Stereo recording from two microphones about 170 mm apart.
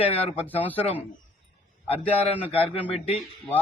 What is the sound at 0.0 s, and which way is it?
Speech, 35° left (ahead or behind).